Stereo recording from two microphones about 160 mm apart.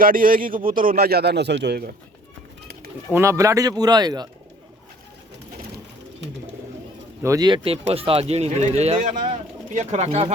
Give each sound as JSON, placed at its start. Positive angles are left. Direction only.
{"t": 0.0, "sound": "a man's voice", "side_deg": -60}
{"t": 3.1, "sound": "speech", "side_deg": -15}
{"t": 7.2, "sound": "speech", "side_deg": -20}